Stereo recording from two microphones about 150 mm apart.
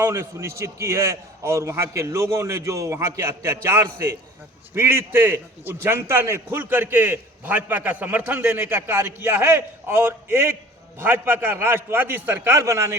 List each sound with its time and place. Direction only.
0.0 s a man's voice: 15° right (ahead or behind)